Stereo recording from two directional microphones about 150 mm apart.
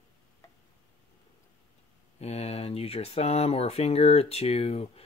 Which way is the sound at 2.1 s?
45° left (ahead or behind).